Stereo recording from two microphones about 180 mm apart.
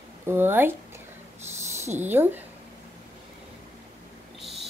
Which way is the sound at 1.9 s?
10° right (ahead or behind).